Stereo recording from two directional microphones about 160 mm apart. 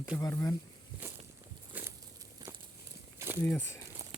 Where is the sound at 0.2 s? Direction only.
15° left (ahead or behind).